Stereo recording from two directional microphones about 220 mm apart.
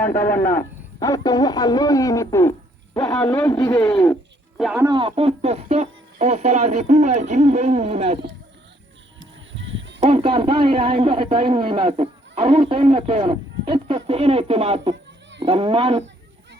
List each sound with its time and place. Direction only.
0.0 s a man's voice: 10° left (ahead or behind)
3.3 s a man's voice: 15° left (ahead or behind)
3.9 s music: 5° left (ahead or behind)
4.6 s speech: 5° right (ahead or behind)
4.9 s speech: 25° right (ahead or behind)
9.5 s honk: 55° right (ahead or behind)
10.0 s a man's voice: 25° right (ahead or behind)